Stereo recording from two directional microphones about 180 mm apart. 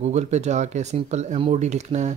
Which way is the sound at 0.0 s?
40° right (ahead or behind).